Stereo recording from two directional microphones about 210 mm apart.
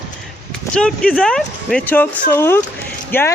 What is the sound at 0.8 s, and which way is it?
Speech, 5° left (ahead or behind).